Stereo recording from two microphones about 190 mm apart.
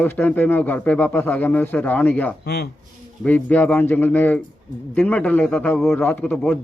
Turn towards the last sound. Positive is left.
turn(degrees=10)  # may be behind; listen again after turning